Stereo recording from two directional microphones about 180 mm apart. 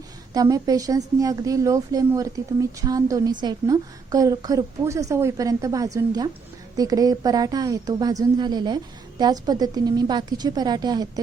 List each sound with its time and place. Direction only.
0.3 s a woman's voice: 20° right (ahead or behind)